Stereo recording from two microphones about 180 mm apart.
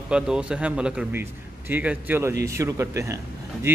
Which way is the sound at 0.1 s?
5° right (ahead or behind).